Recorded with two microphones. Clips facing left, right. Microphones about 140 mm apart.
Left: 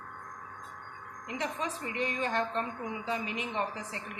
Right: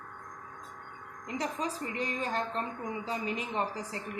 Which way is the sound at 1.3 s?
35° right (ahead or behind).